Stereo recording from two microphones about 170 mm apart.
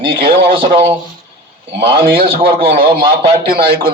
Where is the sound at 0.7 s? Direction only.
30° right (ahead or behind).